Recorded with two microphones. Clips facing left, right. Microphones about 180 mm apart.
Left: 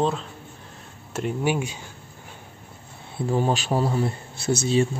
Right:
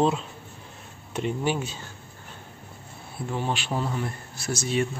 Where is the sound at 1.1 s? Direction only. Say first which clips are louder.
Left 2 dB; 5° left (ahead or behind).